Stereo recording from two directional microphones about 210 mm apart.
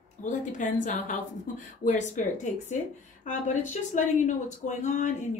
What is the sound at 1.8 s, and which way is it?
A woman's voice, 35° left (ahead or behind).